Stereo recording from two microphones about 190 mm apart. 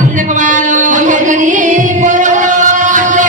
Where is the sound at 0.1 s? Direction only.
40° right (ahead or behind).